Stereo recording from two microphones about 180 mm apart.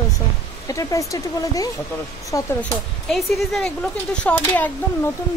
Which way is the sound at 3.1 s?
Centre (ahead or behind).